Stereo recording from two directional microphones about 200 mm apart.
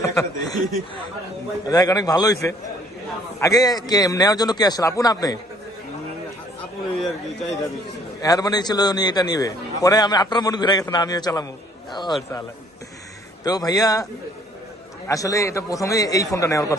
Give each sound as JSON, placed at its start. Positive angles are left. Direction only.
{"t": 0.0, "sound": "a man's voice", "side_deg": 15}
{"t": 1.6, "sound": "a man's voice", "side_deg": 20}
{"t": 7.3, "sound": "speech", "side_deg": 0}
{"t": 8.2, "sound": "a man's voice", "side_deg": 20}
{"t": 13.4, "sound": "a man's voice", "side_deg": 20}